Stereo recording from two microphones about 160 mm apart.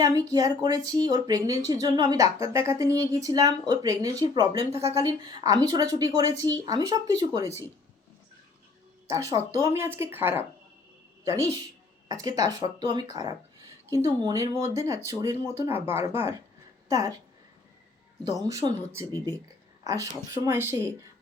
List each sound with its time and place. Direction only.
0.0 s a woman's voice: 25° right (ahead or behind)
9.0 s a woman's voice: 20° right (ahead or behind)
18.3 s a woman's voice: 20° right (ahead or behind)